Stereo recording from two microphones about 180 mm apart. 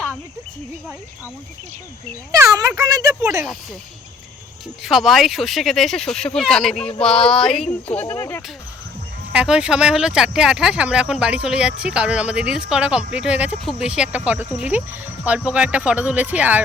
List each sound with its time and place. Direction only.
2.3 s speech: 20° right (ahead or behind)
4.8 s speech: centre (ahead or behind); by 8.4 s 15° left (ahead or behind)
9.3 s speech: 5° right (ahead or behind)